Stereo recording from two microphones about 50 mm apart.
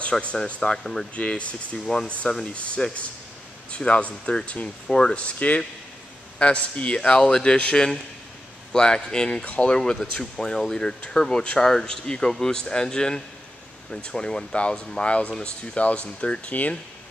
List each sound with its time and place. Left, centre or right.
0.1 s speech: centre
1.1 s speech: left